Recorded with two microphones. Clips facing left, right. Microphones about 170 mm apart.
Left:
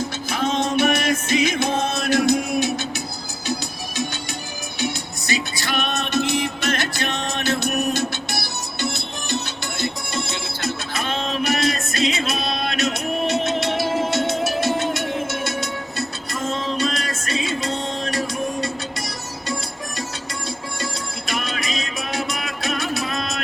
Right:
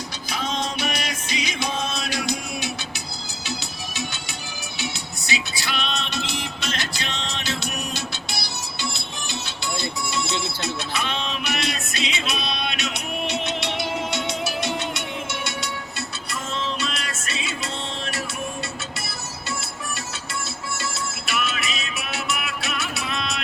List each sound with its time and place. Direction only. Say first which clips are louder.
0.3 s music: left 5 dB; 55° left (ahead or behind)
4.8 s music: left 7 dB; 45° left (ahead or behind)
9.7 s music: left 2 dB; 45° left (ahead or behind)
16.3 s music: left 4 dB; 45° left (ahead or behind)
21.2 s music: left 2 dB; 40° left (ahead or behind)